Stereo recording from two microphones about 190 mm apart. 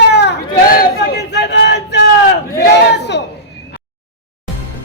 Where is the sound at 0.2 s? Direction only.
55° left (ahead or behind).